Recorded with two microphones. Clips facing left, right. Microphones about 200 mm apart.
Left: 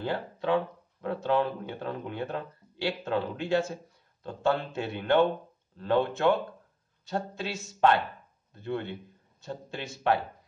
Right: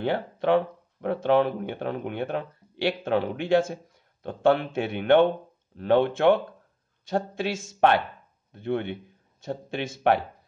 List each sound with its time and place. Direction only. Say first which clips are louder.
0.0 s speech: right 5 dB; 70° right (ahead or behind)